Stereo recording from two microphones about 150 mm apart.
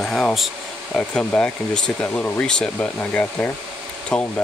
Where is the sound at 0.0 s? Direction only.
5° left (ahead or behind).